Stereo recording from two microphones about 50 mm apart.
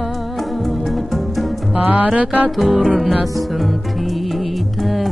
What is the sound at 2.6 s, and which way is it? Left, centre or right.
Music, centre.